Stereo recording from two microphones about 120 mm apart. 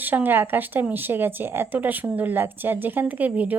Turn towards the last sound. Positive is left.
turn(degrees=-15)  # may be behind; listen again after turning